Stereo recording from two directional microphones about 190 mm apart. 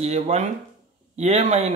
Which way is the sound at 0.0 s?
35° right (ahead or behind).